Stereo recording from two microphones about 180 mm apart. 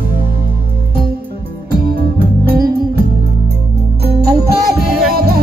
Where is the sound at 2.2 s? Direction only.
10° right (ahead or behind).